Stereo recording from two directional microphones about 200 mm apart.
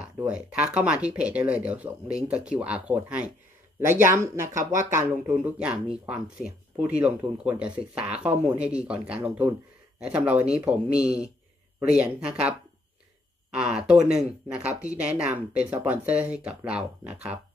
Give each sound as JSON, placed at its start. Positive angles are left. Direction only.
{"t": 0.3, "sound": "speech", "side_deg": -5}
{"t": 13.6, "sound": "speech", "side_deg": -5}